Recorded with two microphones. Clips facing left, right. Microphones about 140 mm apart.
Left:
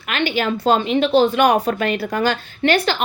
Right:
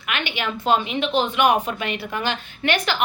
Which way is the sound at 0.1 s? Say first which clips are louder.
Left 7 dB; 35° left (ahead or behind).